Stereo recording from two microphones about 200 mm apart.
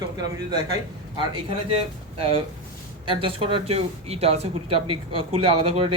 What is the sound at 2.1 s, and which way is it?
Speech, 30° right (ahead or behind).